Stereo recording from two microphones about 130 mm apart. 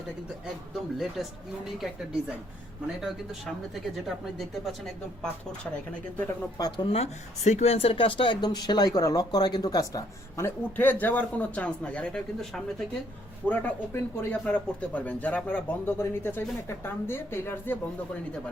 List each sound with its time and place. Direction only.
0.9 s speech: centre (ahead or behind)
4.0 s speech: centre (ahead or behind)
6.6 s speech: 30° left (ahead or behind)
6.9 s speech: 55° left (ahead or behind); by 12.6 s 5° left (ahead or behind)
13.5 s speech: 15° left (ahead or behind)